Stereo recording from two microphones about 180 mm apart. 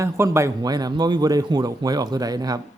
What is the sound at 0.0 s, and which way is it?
A man's voice, 15° right (ahead or behind).